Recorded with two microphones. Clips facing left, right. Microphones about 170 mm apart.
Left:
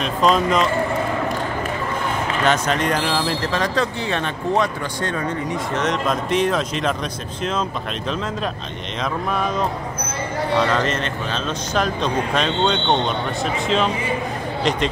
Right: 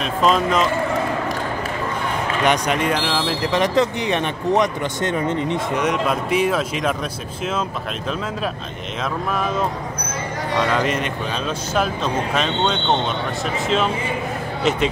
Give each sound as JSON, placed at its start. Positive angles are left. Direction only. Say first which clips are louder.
{"t": 0.0, "sound": "speech", "louder": "even", "side_deg": 0}
{"t": 2.4, "sound": "speech", "louder": "right 1 dB", "side_deg": -15}
{"t": 3.5, "sound": "speech", "louder": "right 6 dB", "side_deg": -20}
{"t": 5.8, "sound": "speech", "louder": "left 1 dB", "side_deg": -10}
{"t": 10.7, "sound": "speech", "louder": "right 1 dB", "side_deg": -10}
{"t": 14.6, "sound": "speech", "louder": "right 2 dB", "side_deg": -5}